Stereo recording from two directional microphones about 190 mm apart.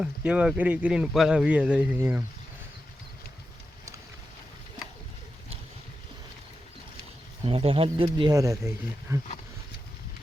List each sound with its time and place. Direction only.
0.0 s speech: 5° right (ahead or behind)
7.4 s speech: 30° right (ahead or behind)